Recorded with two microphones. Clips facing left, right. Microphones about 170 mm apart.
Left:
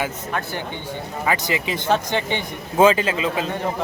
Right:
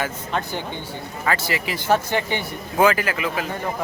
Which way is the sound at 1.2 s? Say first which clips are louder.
Left 1 dB; 15° left (ahead or behind).